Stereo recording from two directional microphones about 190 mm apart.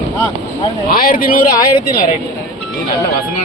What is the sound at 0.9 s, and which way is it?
Speech, 50° left (ahead or behind).